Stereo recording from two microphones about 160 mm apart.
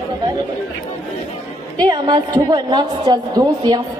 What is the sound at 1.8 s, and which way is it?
A woman's voice, 25° right (ahead or behind).